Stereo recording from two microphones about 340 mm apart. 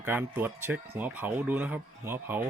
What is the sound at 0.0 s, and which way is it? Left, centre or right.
Speech, centre.